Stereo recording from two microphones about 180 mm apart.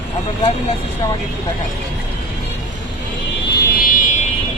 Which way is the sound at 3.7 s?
50° left (ahead or behind).